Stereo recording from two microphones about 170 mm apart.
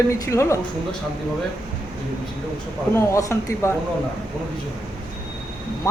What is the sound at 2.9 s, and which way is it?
Speech, 15° left (ahead or behind).